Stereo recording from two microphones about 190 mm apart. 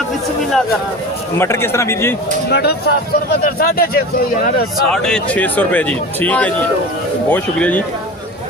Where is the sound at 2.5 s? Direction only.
60° left (ahead or behind).